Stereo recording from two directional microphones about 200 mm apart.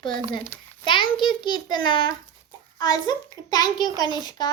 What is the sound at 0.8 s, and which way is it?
Speech, 25° left (ahead or behind).